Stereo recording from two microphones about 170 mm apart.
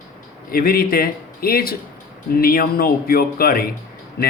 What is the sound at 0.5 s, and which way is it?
Speech, 60° left (ahead or behind).